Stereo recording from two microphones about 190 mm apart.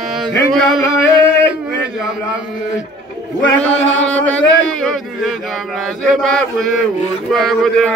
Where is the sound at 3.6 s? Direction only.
5° left (ahead or behind).